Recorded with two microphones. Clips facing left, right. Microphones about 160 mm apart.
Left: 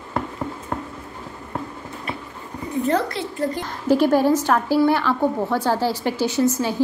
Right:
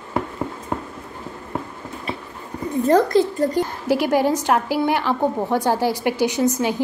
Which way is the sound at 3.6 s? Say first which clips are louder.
Left 2 dB; 15° right (ahead or behind).